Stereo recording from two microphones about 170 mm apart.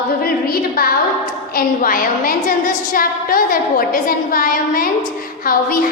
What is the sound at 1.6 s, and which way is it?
A woman's voice, 55° left (ahead or behind).